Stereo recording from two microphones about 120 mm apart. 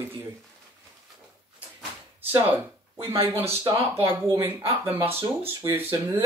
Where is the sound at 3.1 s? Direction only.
25° right (ahead or behind).